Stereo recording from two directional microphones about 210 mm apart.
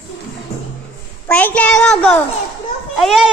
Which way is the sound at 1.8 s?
5° left (ahead or behind).